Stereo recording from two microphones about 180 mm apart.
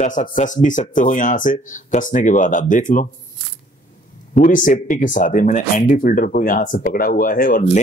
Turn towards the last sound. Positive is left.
turn(degrees=50)  # may be behind; listen again after turning